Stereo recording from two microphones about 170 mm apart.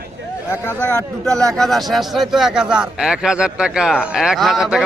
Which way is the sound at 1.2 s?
Centre (ahead or behind).